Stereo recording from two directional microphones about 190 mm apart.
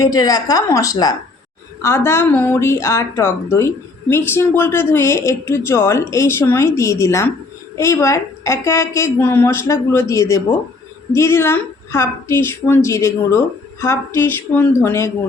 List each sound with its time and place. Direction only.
0.0 s a woman's voice: 20° left (ahead or behind)